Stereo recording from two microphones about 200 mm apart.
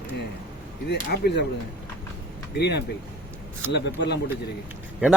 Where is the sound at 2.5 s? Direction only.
55° left (ahead or behind).